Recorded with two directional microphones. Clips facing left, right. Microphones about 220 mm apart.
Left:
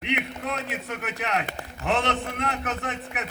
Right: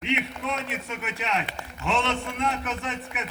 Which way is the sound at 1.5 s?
50° left (ahead or behind).